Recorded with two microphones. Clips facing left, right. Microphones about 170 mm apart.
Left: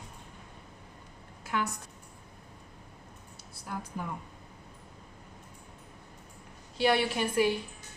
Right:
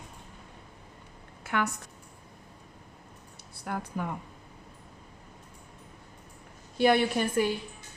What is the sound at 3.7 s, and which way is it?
Speech, 65° right (ahead or behind).